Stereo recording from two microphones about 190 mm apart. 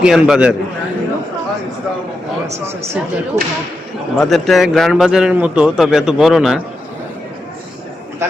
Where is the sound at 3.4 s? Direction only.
15° right (ahead or behind).